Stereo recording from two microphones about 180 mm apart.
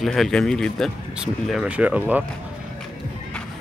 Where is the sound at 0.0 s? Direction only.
Centre (ahead or behind).